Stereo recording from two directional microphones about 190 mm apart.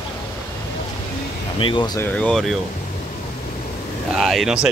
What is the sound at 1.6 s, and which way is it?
Speech, 25° left (ahead or behind).